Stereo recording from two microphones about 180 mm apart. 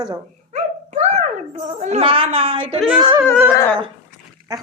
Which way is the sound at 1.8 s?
35° right (ahead or behind).